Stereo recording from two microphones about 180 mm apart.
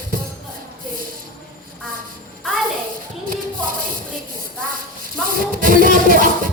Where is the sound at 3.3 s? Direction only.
50° right (ahead or behind).